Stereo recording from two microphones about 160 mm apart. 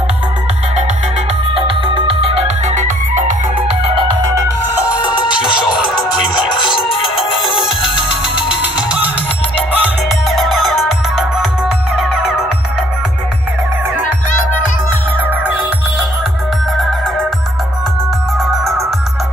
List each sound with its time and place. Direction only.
2.0 s music: 40° right (ahead or behind)
4.2 s music: 20° right (ahead or behind)
5.1 s music: 30° left (ahead or behind)
6.5 s music: 30° left (ahead or behind)
7.0 s music: centre (ahead or behind)
18.4 s music: centre (ahead or behind)